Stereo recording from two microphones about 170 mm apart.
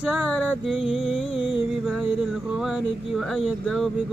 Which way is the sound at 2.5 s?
5° right (ahead or behind).